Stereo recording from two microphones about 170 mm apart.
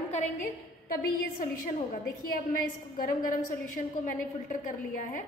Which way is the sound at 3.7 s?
50° left (ahead or behind).